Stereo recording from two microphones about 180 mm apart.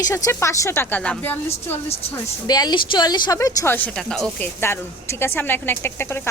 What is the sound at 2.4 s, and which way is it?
A woman's voice, 20° left (ahead or behind).